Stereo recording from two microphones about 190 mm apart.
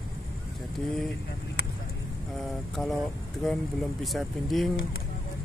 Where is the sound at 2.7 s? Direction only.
Centre (ahead or behind).